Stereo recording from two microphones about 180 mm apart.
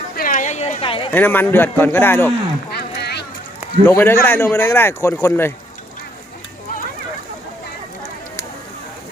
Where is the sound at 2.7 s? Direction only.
65° left (ahead or behind).